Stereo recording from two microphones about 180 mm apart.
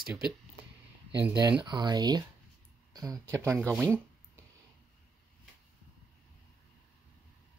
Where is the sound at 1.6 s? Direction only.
25° right (ahead or behind).